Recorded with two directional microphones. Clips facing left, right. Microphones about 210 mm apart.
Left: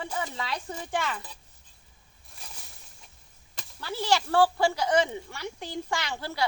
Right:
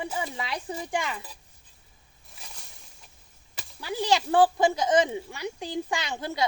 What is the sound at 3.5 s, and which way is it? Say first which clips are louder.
Speech: right 3 dB; 15° right (ahead or behind).